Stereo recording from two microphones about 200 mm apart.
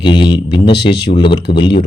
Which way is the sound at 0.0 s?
25° left (ahead or behind).